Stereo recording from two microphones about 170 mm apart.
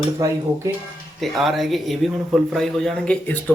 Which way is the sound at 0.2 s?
20° right (ahead or behind).